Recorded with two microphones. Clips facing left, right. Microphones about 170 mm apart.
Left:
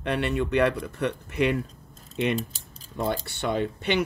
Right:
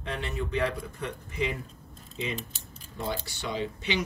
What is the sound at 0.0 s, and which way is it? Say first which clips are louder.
Speech: left 8 dB; 70° left (ahead or behind).